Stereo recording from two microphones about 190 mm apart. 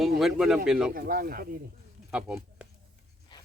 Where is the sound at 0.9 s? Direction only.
50° right (ahead or behind).